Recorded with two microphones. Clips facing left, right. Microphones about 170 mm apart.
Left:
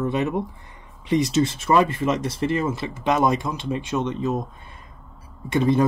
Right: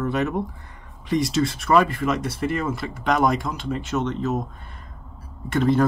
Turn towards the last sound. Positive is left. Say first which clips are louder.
# even
turn(degrees=15)  # may be behind; listen again after turning